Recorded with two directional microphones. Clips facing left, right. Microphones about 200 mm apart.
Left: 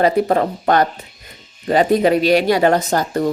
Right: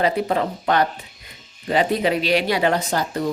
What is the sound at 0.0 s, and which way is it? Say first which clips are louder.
Speech: left 5 dB; 45° left (ahead or behind).